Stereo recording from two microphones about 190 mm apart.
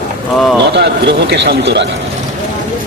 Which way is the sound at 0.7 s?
65° right (ahead or behind).